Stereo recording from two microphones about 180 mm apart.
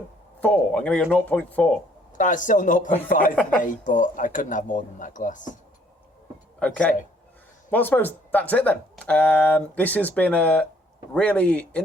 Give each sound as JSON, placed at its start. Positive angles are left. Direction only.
{"t": 0.3, "sound": "speech", "side_deg": 10}
{"t": 2.1, "sound": "speech", "side_deg": 45}
{"t": 6.6, "sound": "speech", "side_deg": 5}